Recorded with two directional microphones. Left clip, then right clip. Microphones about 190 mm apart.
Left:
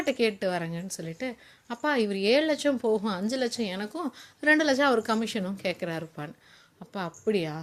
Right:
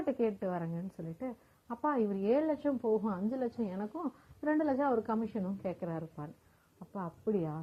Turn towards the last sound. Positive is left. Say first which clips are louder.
# left 7 dB
turn(degrees=35)  # may be behind; listen again after turning